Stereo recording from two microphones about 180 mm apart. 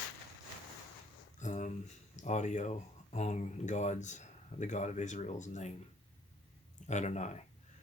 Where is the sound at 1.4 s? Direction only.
40° left (ahead or behind).